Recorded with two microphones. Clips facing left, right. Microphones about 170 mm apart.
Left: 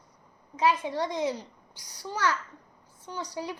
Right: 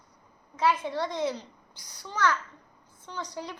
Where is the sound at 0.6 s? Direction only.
15° left (ahead or behind).